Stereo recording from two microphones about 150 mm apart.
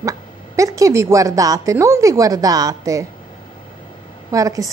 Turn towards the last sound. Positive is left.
turn(degrees=-20)  # may be behind; listen again after turning